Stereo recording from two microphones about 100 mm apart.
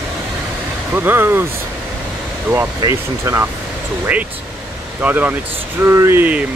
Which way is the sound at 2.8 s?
30° right (ahead or behind).